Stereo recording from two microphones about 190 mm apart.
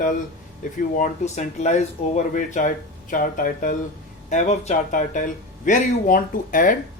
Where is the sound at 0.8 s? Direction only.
45° left (ahead or behind).